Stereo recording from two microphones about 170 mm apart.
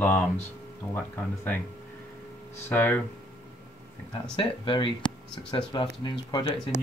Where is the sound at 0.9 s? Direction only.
10° left (ahead or behind).